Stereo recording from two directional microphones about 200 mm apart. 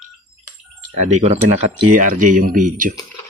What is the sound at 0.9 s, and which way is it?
Speech, 35° right (ahead or behind).